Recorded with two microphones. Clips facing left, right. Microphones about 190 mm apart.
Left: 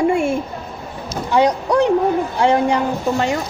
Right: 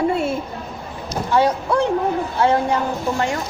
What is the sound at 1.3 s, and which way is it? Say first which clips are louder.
A woman's voice: left 2 dB; 15° left (ahead or behind).